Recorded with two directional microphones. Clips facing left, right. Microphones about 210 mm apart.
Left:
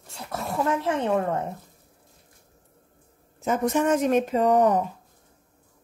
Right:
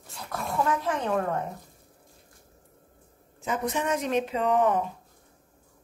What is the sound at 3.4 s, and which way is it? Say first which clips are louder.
A woman's voice: left 6 dB; 45° left (ahead or behind).